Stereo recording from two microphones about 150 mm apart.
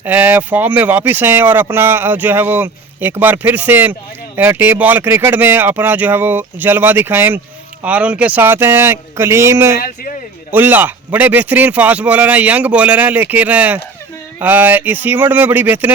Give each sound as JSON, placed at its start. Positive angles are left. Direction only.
{"t": 0.0, "sound": "speech", "side_deg": -10}
{"t": 9.8, "sound": "speech", "side_deg": 75}
{"t": 10.5, "sound": "speech", "side_deg": -15}